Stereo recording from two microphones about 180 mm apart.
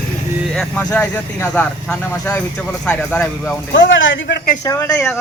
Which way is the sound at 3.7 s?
90° left.